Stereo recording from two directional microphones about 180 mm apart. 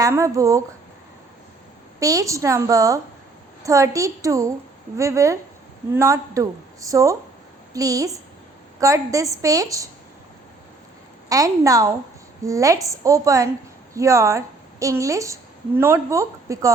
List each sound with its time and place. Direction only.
0.0 s a woman's voice: 15° right (ahead or behind)
2.0 s a woman's voice: 20° right (ahead or behind)
11.3 s a woman's voice: 20° right (ahead or behind)